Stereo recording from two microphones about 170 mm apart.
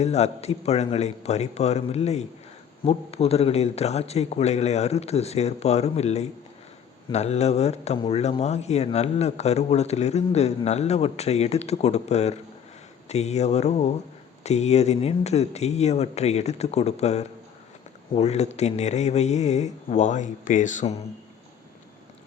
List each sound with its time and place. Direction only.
0.0 s speech: 40° left (ahead or behind)